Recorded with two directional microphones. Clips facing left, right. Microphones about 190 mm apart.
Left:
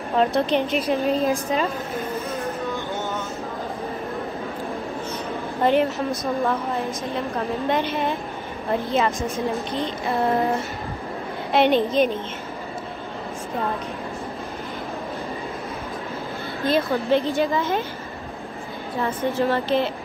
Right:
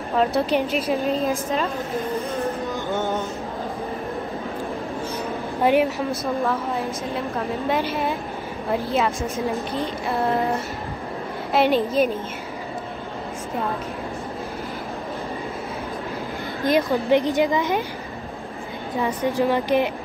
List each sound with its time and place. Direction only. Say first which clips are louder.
0.1 s a woman's voice: even; 5° right (ahead or behind)
5.6 s speech: right 1 dB; 10° right (ahead or behind)
6.4 s a woman's voice: even; centre (ahead or behind)
16.6 s speech: right 1 dB; 15° right (ahead or behind)
18.9 s speech: right 1 dB; 15° right (ahead or behind)